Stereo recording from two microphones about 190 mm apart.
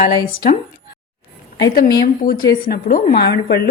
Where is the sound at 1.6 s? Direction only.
55° left (ahead or behind).